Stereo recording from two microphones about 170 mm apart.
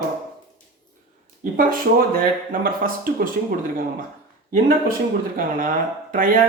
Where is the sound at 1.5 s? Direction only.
55° right (ahead or behind).